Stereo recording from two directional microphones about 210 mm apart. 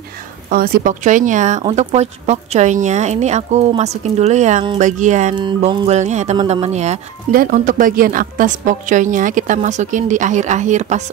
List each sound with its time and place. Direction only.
0.5 s speech: 45° right (ahead or behind)
5.3 s speech: 20° right (ahead or behind)